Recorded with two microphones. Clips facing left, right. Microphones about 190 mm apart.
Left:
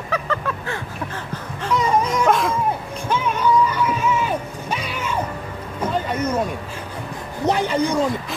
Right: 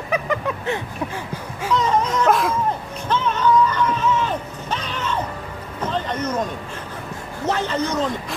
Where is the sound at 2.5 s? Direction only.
10° left (ahead or behind).